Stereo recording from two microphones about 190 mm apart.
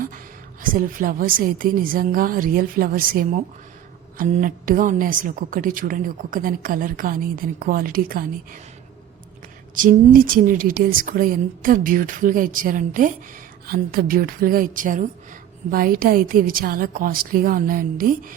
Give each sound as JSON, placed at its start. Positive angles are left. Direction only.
{"t": 0.6, "sound": "a woman's voice", "side_deg": -45}
{"t": 9.7, "sound": "a woman's voice", "side_deg": -45}